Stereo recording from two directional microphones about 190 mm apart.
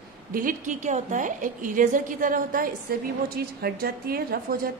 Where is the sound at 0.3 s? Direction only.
45° right (ahead or behind).